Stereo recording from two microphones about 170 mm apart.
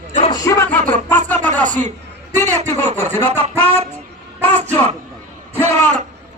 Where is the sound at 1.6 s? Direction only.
45° right (ahead or behind).